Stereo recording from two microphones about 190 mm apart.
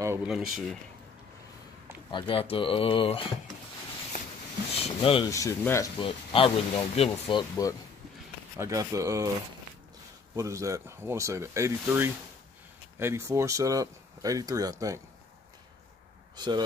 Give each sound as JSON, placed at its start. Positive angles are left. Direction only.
{"t": 0.0, "sound": "a sound", "side_deg": -15}
{"t": 2.0, "sound": "speech", "side_deg": 25}
{"t": 4.1, "sound": "a sound", "side_deg": 40}
{"t": 4.7, "sound": "speech", "side_deg": 30}
{"t": 5.3, "sound": "speech", "side_deg": 15}
{"t": 5.9, "sound": "speech", "side_deg": 30}
{"t": 8.5, "sound": "speech", "side_deg": -15}
{"t": 10.3, "sound": "speech", "side_deg": -15}
{"t": 16.3, "sound": "speech", "side_deg": -20}